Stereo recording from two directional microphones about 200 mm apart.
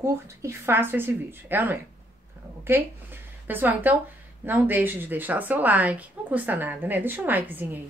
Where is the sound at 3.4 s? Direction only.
10° right (ahead or behind).